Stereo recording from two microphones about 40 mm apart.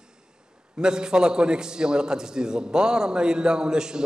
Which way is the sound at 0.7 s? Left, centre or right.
Centre.